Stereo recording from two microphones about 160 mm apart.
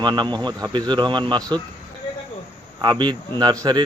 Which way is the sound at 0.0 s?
30° right (ahead or behind).